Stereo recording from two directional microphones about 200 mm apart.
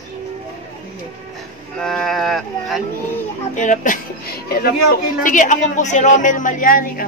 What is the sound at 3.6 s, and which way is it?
Speech, 40° left (ahead or behind).